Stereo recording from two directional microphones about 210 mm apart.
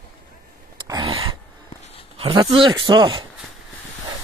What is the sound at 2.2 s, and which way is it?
Speech, 25° right (ahead or behind).